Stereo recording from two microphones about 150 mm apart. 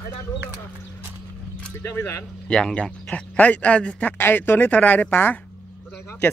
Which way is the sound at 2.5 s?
5° left (ahead or behind).